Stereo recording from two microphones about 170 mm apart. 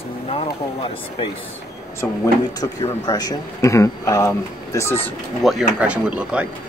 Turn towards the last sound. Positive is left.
turn(degrees=-5)  # may be behind; listen again after turning